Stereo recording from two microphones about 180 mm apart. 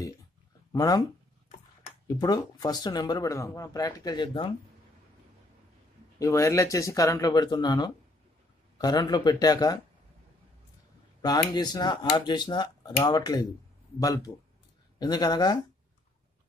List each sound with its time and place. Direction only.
0.7 s speech: 20° left (ahead or behind)
2.0 s speech: 20° left (ahead or behind)
6.1 s speech: 15° left (ahead or behind)
11.5 s speech: 25° left (ahead or behind)